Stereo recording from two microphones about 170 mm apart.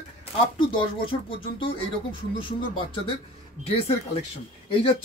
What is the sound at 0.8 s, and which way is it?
Speech, 30° left (ahead or behind).